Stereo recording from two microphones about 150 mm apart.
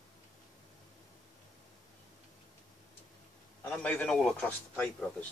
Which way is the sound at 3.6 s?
10° left (ahead or behind).